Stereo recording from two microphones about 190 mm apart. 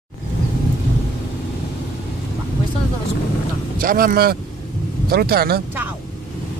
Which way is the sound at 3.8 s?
50° right (ahead or behind).